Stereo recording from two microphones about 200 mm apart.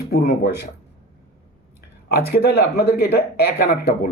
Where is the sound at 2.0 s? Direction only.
50° left (ahead or behind).